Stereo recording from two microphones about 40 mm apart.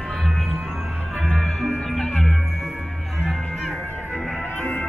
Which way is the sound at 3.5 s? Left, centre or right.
Centre.